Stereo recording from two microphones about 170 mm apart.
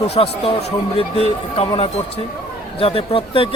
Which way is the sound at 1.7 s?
35° left (ahead or behind).